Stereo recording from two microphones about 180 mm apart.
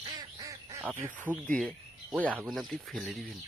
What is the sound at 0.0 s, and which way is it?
Duck, 20° right (ahead or behind).